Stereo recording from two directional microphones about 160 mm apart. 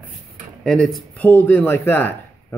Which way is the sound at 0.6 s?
5° left (ahead or behind).